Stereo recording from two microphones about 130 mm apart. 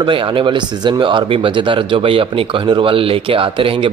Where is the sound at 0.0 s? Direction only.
40° right (ahead or behind).